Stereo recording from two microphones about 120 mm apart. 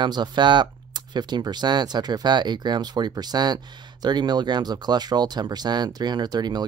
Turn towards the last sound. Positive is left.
turn(degrees=-35)  # may be behind; listen again after turning